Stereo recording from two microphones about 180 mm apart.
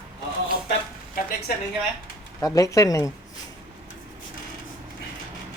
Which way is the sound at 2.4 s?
20° left (ahead or behind).